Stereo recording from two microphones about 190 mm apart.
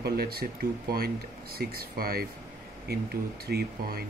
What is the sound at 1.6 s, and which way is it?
Speech, 55° right (ahead or behind).